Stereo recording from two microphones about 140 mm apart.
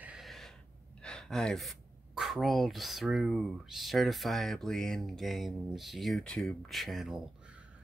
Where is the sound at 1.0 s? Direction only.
5° left (ahead or behind).